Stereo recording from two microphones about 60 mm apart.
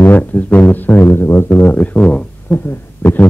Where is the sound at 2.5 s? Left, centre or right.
Left.